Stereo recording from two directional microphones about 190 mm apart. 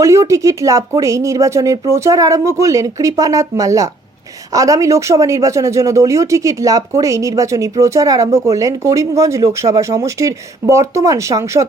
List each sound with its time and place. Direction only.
0.0 s speech: 15° right (ahead or behind)